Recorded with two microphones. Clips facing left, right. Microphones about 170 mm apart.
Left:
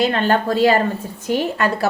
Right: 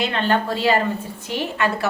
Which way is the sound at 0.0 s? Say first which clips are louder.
Left 4 dB; 45° left (ahead or behind).